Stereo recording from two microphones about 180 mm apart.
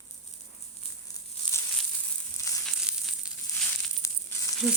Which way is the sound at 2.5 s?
15° left (ahead or behind).